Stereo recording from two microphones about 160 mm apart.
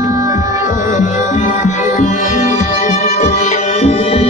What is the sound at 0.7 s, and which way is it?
Music, 50° left (ahead or behind).